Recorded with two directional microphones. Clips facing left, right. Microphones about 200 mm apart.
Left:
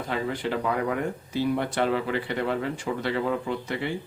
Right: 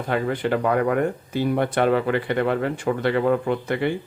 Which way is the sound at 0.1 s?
60° right (ahead or behind).